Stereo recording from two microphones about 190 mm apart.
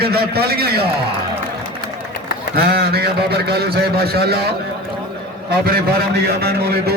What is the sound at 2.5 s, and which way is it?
A man's voice, 55° right (ahead or behind).